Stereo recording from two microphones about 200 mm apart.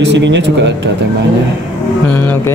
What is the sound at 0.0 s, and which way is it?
Speech, 65° right (ahead or behind).